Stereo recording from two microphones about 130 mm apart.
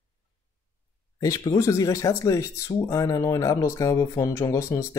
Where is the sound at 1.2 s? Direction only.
25° left (ahead or behind).